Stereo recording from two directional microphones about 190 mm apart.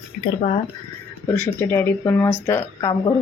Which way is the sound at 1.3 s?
10° left (ahead or behind).